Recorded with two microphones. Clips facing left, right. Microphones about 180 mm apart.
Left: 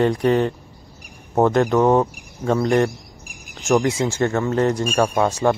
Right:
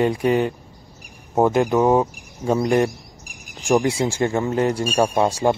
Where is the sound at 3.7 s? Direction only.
25° right (ahead or behind).